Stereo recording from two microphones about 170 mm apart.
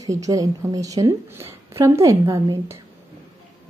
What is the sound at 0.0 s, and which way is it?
A woman's voice, 20° right (ahead or behind).